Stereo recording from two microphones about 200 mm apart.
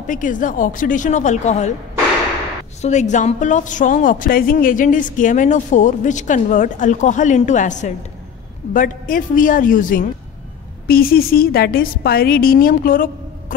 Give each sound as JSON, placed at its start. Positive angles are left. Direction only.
{"t": 0.0, "sound": "a woman's voice", "side_deg": 40}
{"t": 2.8, "sound": "a woman's voice", "side_deg": 35}